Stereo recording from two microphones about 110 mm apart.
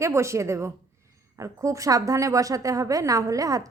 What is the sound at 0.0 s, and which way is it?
A woman's voice, 25° right (ahead or behind).